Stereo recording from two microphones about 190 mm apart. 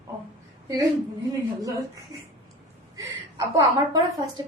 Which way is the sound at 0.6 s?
20° right (ahead or behind).